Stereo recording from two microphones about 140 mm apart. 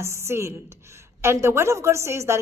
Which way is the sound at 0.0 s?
20° right (ahead or behind).